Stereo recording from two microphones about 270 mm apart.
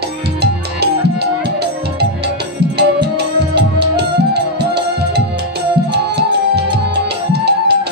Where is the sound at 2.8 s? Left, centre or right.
Right.